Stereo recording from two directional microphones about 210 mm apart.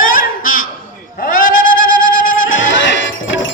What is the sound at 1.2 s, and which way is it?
Bleat, 40° left (ahead or behind).